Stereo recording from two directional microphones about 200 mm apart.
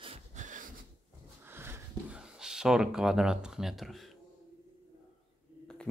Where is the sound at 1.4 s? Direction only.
10° right (ahead or behind).